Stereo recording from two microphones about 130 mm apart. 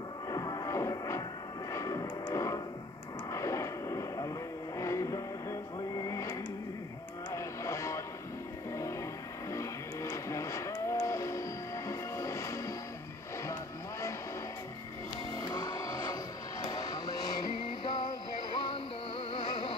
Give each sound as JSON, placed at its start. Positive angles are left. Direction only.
{"t": 0.3, "sound": "music", "side_deg": 30}
{"t": 1.7, "sound": "a sound", "side_deg": 25}
{"t": 4.7, "sound": "vehicle", "side_deg": 25}
{"t": 7.3, "sound": "music", "side_deg": 20}
{"t": 10.1, "sound": "music", "side_deg": 20}
{"t": 15.3, "sound": "music", "side_deg": 30}